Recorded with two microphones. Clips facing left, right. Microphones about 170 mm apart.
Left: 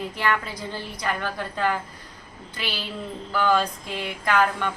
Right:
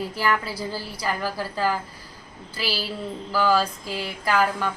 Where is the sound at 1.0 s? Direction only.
5° right (ahead or behind).